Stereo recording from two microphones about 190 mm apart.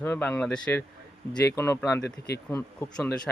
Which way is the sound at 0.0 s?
10° left (ahead or behind).